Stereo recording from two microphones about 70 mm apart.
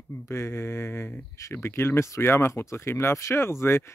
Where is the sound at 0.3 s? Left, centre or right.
Left.